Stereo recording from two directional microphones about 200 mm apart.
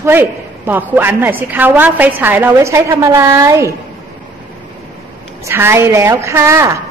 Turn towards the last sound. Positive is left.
turn(degrees=-15)  # may be behind; listen again after turning